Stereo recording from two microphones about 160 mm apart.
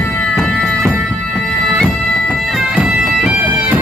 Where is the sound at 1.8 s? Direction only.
Centre (ahead or behind).